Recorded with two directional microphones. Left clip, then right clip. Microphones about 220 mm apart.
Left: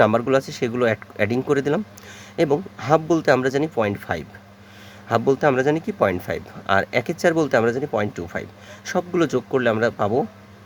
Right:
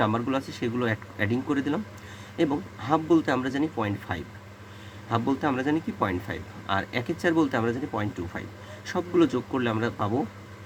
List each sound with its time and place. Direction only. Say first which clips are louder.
0.0 s speech: left 9 dB; 45° left (ahead or behind)